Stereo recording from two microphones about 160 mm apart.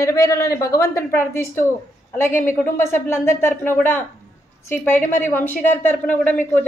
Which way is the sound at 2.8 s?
15° left (ahead or behind).